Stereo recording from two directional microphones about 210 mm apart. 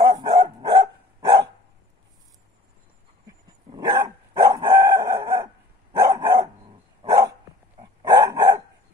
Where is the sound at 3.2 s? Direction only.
15° right (ahead or behind).